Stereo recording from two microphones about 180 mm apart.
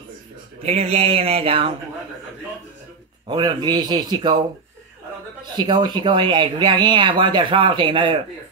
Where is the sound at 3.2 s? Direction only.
25° right (ahead or behind).